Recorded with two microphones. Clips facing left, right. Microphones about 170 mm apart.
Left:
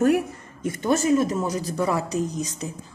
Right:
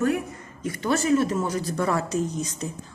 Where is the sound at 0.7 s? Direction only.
20° left (ahead or behind).